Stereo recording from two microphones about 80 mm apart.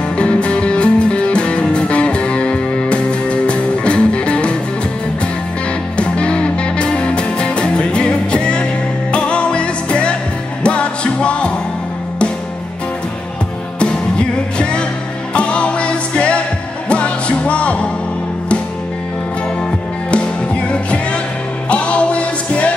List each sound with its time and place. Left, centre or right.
0.2 s music: centre
5.9 s music: centre
13.7 s music: centre
20.6 s music: centre